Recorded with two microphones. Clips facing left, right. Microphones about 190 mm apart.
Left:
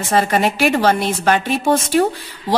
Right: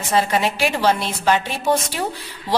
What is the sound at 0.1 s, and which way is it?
Speech, 55° left (ahead or behind).